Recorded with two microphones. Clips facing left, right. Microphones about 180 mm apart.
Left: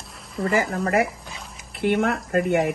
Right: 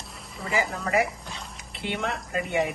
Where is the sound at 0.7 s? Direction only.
55° left (ahead or behind).